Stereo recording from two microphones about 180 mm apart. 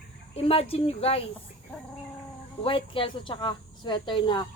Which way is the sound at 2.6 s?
30° left (ahead or behind).